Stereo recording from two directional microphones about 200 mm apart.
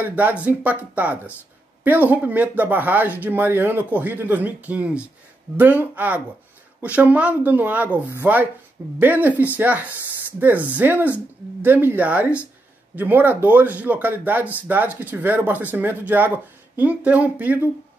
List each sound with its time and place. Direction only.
0.0 s speech: 10° right (ahead or behind)